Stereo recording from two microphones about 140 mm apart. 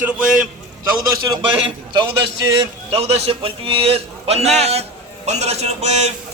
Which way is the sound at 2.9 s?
45° right (ahead or behind).